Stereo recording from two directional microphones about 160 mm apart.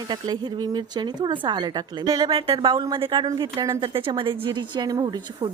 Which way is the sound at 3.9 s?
30° right (ahead or behind).